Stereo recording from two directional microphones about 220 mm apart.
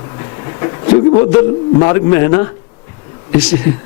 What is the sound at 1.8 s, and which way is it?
Speech, 15° left (ahead or behind).